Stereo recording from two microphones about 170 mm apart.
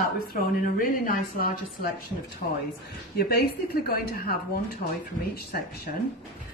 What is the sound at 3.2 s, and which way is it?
Speech, 70° left (ahead or behind).